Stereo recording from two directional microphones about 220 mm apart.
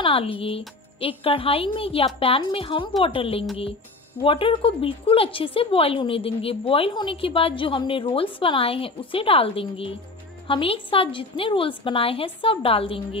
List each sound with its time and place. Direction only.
0.0 s a woman's voice: 25° left (ahead or behind)